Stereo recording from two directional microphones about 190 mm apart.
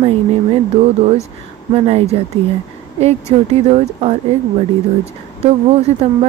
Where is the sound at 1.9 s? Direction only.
35° right (ahead or behind).